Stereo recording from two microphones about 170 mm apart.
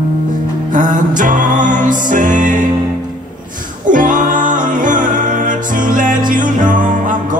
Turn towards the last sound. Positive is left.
turn(degrees=-50)  # may be behind; listen again after turning